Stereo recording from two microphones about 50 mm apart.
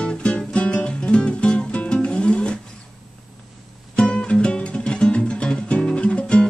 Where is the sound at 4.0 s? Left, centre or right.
Left.